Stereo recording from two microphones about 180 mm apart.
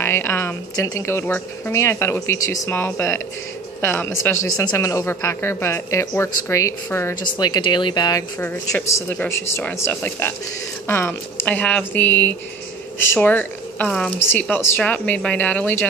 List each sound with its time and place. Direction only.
0.0 s speech: 15° left (ahead or behind)
7.3 s speech: 25° left (ahead or behind)
8.4 s speech: 10° left (ahead or behind)